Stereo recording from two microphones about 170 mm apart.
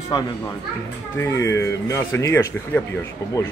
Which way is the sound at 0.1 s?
25° left (ahead or behind).